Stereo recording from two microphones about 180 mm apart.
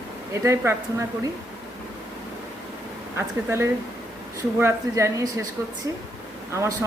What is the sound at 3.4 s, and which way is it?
Speech, 15° right (ahead or behind).